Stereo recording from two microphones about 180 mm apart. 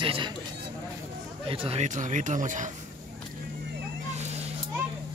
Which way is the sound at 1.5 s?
30° right (ahead or behind).